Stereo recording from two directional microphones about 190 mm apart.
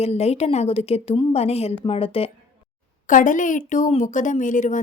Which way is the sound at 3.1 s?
45° left (ahead or behind).